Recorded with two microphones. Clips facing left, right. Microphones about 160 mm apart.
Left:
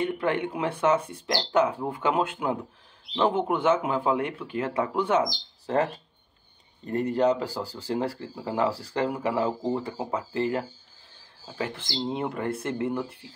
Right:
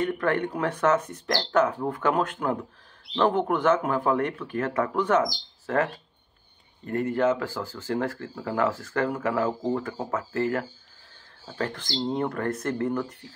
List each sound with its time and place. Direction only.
0.0 s speech: 10° left (ahead or behind)
6.9 s speech: 20° left (ahead or behind)
8.7 s speech: 30° left (ahead or behind)
9.8 s speech: 15° left (ahead or behind)